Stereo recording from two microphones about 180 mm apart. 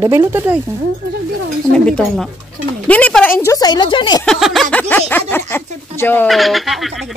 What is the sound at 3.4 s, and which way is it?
Speech, 20° left (ahead or behind).